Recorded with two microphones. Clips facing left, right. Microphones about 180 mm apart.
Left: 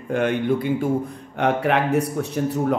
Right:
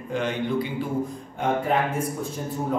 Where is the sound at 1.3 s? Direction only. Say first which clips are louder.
Left 4 dB; 75° left (ahead or behind).